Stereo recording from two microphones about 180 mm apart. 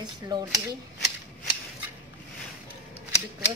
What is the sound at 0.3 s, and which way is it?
Speech, 25° right (ahead or behind).